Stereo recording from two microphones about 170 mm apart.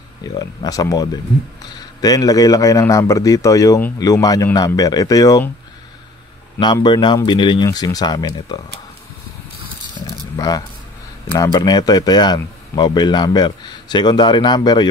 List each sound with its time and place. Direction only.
0.4 s speech: 20° left (ahead or behind)
6.6 s speech: 25° left (ahead or behind)
10.0 s a sound: 25° left (ahead or behind)
10.3 s speech: 20° left (ahead or behind)